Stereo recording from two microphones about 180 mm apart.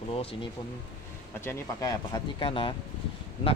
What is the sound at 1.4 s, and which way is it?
Speech, 15° left (ahead or behind).